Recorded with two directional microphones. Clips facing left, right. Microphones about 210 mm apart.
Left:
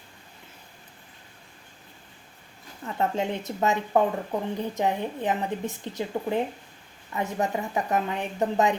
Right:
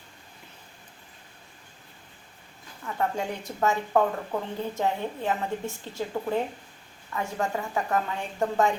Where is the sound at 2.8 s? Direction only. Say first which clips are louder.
Left 2 dB; 25° left (ahead or behind).